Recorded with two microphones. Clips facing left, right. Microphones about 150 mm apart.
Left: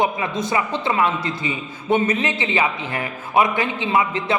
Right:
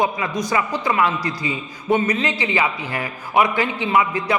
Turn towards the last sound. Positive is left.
turn(degrees=25)  # may be behind; listen again after turning